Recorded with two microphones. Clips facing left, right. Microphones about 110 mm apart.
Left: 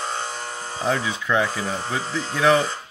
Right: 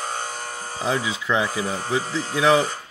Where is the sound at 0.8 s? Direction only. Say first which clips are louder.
Even; 10° right (ahead or behind).